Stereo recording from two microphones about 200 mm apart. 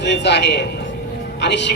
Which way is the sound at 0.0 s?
60° left (ahead or behind).